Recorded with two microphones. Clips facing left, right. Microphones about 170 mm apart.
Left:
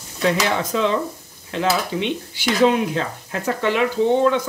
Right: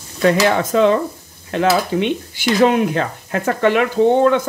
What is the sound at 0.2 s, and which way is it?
Speech, 55° right (ahead or behind).